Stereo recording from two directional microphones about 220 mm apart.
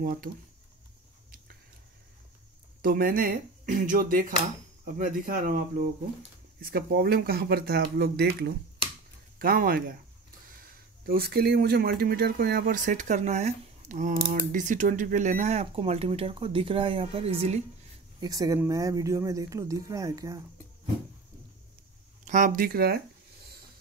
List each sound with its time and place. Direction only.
0.0 s speech: 40° right (ahead or behind)
2.8 s speech: 40° right (ahead or behind)
11.1 s speech: 45° right (ahead or behind); by 17.6 s 25° right (ahead or behind)
18.2 s speech: 15° right (ahead or behind)
22.2 s speech: 35° right (ahead or behind)